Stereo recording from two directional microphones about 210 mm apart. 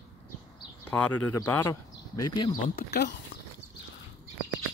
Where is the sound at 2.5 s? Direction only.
50° left (ahead or behind).